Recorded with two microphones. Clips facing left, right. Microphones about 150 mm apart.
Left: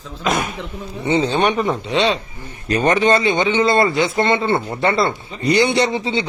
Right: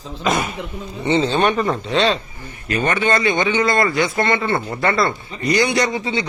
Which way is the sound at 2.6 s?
35° left (ahead or behind).